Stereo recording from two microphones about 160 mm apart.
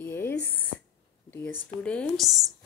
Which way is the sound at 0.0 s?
15° left (ahead or behind).